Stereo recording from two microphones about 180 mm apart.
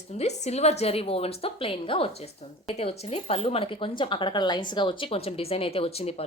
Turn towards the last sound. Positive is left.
turn(degrees=35)  # may be behind; listen again after turning